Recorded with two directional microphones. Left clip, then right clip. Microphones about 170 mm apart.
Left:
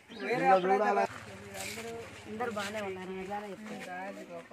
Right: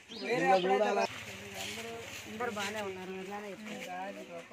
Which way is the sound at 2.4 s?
50° left (ahead or behind).